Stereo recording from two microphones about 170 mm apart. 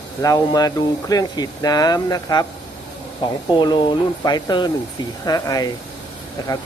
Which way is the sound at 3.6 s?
25° left (ahead or behind).